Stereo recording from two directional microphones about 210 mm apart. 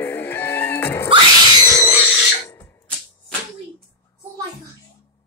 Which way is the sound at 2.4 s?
10° left (ahead or behind).